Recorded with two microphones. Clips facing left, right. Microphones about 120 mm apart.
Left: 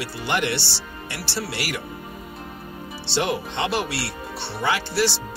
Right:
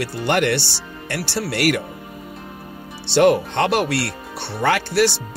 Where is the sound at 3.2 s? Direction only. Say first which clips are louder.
Right 9 dB; 55° right (ahead or behind).